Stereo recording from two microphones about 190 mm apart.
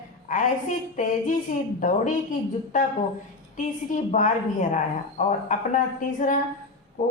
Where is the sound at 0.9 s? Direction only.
45° left (ahead or behind).